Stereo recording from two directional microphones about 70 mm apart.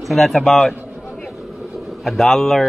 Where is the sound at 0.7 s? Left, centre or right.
Centre.